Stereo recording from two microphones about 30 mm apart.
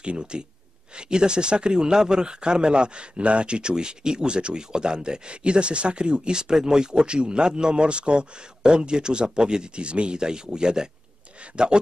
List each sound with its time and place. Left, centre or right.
0.2 s speech: right